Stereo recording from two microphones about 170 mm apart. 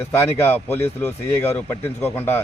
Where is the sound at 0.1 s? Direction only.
15° left (ahead or behind).